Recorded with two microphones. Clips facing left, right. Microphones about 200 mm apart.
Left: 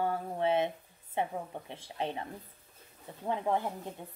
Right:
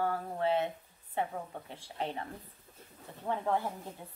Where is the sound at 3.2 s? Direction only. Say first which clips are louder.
Left 1 dB; 15° left (ahead or behind).